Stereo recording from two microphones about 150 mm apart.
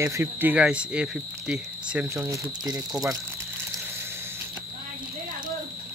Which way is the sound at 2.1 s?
20° right (ahead or behind).